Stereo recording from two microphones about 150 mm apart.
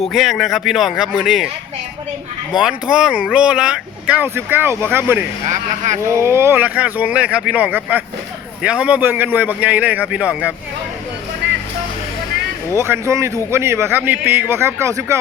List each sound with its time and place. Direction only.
0.1 s speech: centre (ahead or behind)
2.6 s speech: 5° right (ahead or behind)
12.7 s speech: 15° right (ahead or behind)